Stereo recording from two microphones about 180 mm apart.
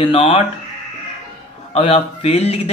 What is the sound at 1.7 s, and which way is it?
Speech, 35° left (ahead or behind).